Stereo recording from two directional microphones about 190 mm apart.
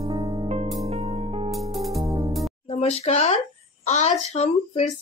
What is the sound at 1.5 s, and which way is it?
Music, centre (ahead or behind).